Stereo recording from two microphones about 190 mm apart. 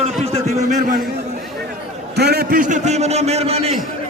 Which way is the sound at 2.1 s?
55° right (ahead or behind).